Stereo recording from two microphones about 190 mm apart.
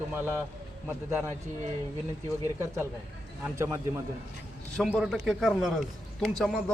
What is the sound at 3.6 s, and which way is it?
Speech, 15° right (ahead or behind).